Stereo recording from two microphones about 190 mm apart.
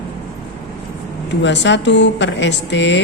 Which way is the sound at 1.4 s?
70° left (ahead or behind).